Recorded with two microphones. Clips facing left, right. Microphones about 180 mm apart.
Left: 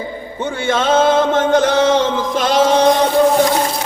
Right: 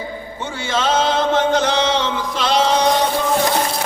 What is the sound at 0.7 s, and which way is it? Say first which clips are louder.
Chant: left 5 dB; 55° left (ahead or behind).